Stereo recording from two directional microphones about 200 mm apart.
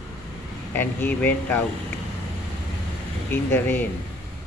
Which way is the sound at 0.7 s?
10° left (ahead or behind).